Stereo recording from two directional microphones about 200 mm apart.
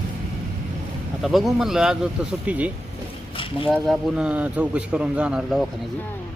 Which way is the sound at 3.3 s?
25° left (ahead or behind).